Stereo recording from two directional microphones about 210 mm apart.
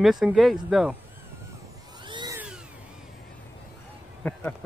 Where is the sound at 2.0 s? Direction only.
20° right (ahead or behind).